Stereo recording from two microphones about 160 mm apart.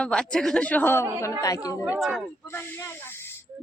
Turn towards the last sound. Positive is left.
turn(degrees=15)  # may be behind; listen again after turning